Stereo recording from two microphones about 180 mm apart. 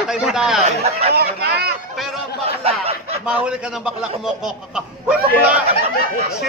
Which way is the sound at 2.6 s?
35° right (ahead or behind).